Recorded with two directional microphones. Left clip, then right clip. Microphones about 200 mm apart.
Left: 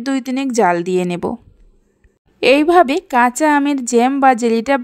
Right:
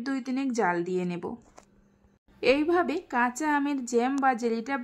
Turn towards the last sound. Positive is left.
turn(degrees=40)  # may be behind; listen again after turning